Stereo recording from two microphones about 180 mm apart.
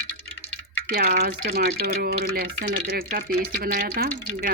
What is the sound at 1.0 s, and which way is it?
Speech, 50° right (ahead or behind).